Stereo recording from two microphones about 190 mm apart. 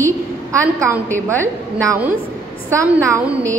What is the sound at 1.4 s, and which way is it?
A woman's voice, 15° right (ahead or behind).